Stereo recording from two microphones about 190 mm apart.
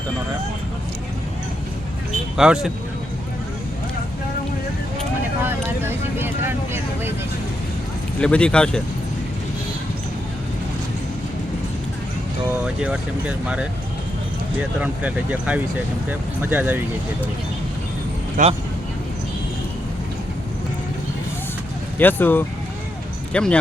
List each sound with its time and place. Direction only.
2.3 s speech: 5° right (ahead or behind)
5.4 s vehicle: 10° right (ahead or behind)
8.2 s speech: 5° left (ahead or behind)
12.8 s speech: 5° right (ahead or behind)
14.8 s speech: 5° right (ahead or behind)
18.4 s speech: 45° right (ahead or behind)
21.9 s speech: 10° left (ahead or behind)